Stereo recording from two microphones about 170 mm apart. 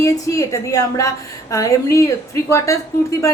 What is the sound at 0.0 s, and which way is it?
A woman's voice, 20° left (ahead or behind).